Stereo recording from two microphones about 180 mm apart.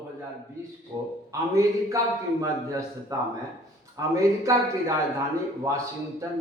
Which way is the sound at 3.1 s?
20° right (ahead or behind).